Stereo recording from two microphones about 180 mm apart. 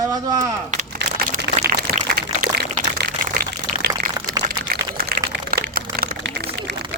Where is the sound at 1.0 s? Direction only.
75° right (ahead or behind).